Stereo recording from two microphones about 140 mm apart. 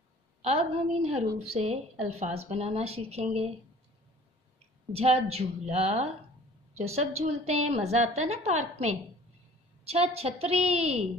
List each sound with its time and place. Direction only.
0.4 s a woman's voice: 50° right (ahead or behind)
4.9 s a woman's voice: 45° right (ahead or behind)